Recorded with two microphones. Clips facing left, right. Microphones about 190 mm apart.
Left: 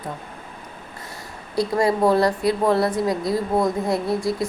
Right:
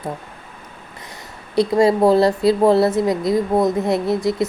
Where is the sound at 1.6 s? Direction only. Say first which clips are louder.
Right 5 dB; 25° right (ahead or behind).